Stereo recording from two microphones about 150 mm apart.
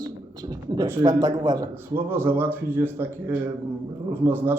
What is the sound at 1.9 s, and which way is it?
A man's voice, 15° right (ahead or behind).